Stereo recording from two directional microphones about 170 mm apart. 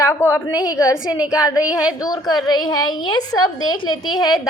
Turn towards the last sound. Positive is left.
turn(degrees=0)  # may be behind; listen again after turning